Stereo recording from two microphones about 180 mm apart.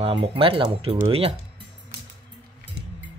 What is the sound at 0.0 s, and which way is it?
Speech, 30° right (ahead or behind).